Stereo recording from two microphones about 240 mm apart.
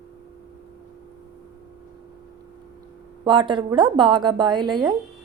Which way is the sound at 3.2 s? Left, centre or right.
Centre.